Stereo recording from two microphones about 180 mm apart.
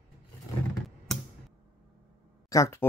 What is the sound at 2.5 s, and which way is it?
Speech, 15° left (ahead or behind).